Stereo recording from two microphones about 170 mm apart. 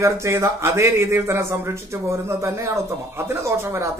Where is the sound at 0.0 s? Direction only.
15° right (ahead or behind).